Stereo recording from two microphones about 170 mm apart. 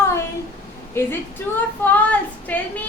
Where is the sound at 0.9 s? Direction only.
15° left (ahead or behind).